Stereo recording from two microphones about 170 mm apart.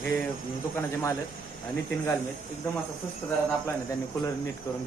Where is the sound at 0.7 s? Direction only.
15° left (ahead or behind).